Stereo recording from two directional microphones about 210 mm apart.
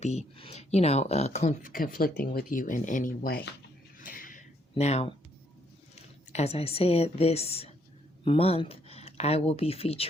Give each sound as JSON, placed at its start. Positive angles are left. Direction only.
{"t": 0.0, "sound": "speech", "side_deg": 30}
{"t": 4.0, "sound": "a sound", "side_deg": 40}
{"t": 4.7, "sound": "speech", "side_deg": 30}
{"t": 6.3, "sound": "a woman's voice", "side_deg": 30}